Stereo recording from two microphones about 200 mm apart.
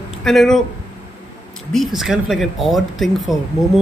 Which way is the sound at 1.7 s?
Centre (ahead or behind).